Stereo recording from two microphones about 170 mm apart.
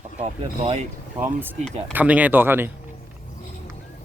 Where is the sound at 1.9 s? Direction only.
10° right (ahead or behind).